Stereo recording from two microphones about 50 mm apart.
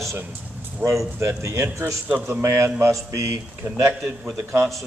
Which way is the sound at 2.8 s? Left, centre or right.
Right.